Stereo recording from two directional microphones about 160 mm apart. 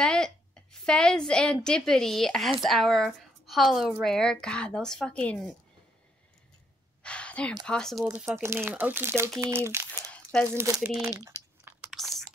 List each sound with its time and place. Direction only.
0.0 s a woman's voice: 5° left (ahead or behind)
7.0 s a sound: 5° left (ahead or behind)
7.6 s a woman's voice: 5° left (ahead or behind)
8.0 s speech: 15° right (ahead or behind)
11.6 s chewing: centre (ahead or behind)